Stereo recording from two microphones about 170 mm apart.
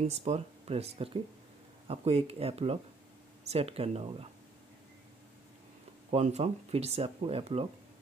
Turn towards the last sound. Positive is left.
turn(degrees=-35)  # may be behind; listen again after turning